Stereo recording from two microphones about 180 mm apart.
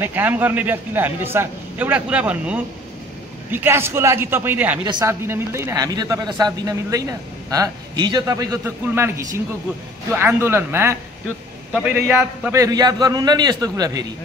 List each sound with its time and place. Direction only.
0.0 s a man's voice: 10° right (ahead or behind)
10.1 s a man's voice: 15° right (ahead or behind)
12.4 s speech: 20° right (ahead or behind)